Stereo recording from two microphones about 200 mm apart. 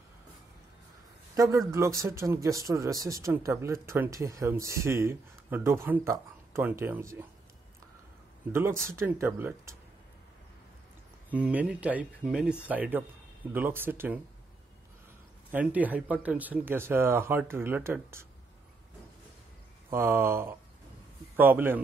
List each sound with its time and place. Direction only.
1.3 s speech: 15° right (ahead or behind)
8.5 s speech: 10° right (ahead or behind)
11.3 s speech: 5° right (ahead or behind)
15.5 s speech: 10° right (ahead or behind)
19.9 s speech: 10° right (ahead or behind)